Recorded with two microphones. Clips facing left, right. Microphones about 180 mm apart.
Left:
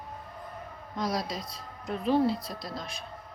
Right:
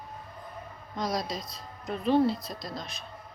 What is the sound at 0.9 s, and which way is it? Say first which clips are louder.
Speech: even; 5° left (ahead or behind).